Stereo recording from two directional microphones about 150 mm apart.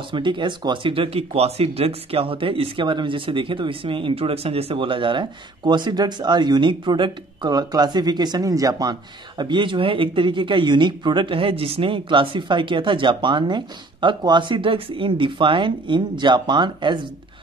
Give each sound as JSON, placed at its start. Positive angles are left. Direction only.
{"t": 0.1, "sound": "speech", "side_deg": -30}